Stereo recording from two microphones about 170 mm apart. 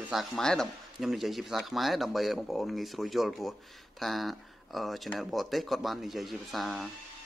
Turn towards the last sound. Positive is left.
turn(degrees=0)  # may be behind; listen again after turning